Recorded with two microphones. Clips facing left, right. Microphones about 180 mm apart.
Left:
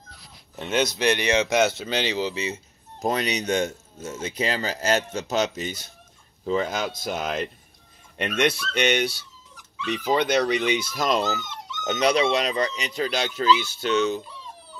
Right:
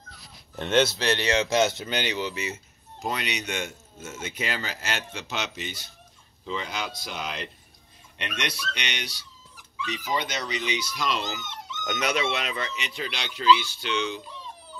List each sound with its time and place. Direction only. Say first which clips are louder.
0.6 s speech: right 1 dB; 10° left (ahead or behind); by 2.6 s 30° left (ahead or behind)
3.0 s speech: left 6 dB; 40° left (ahead or behind)